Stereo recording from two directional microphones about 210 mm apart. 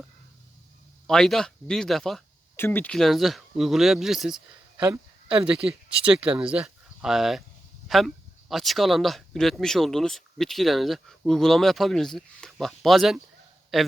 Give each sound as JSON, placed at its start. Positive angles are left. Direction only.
{"t": 1.0, "sound": "speech", "side_deg": 0}